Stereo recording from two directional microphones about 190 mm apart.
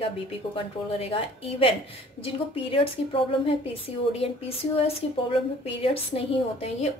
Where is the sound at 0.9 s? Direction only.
30° left (ahead or behind).